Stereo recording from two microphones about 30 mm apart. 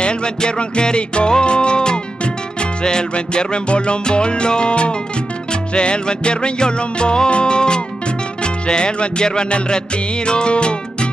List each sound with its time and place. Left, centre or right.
0.0 s music: left